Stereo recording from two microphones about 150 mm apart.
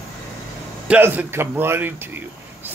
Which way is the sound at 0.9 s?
10° right (ahead or behind).